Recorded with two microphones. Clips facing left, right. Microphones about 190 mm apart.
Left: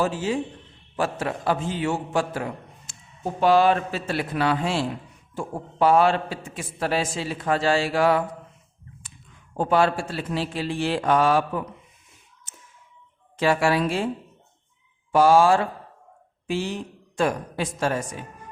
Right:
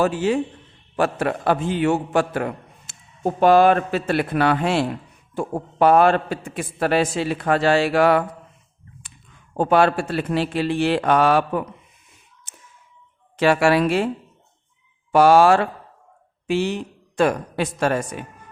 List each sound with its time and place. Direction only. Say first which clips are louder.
0.0 s a man's voice: right 5 dB; 65° right (ahead or behind)
9.6 s a man's voice: right 4 dB; 65° right (ahead or behind)
13.3 s speech: right 4 dB; 70° right (ahead or behind)
15.1 s speech: right 3 dB; 70° right (ahead or behind)